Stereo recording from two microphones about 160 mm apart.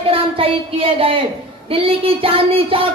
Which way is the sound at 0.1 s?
35° right (ahead or behind).